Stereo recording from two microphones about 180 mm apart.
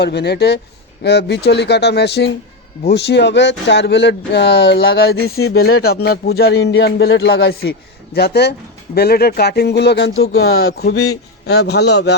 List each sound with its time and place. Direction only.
0.0 s speech: 65° left (ahead or behind)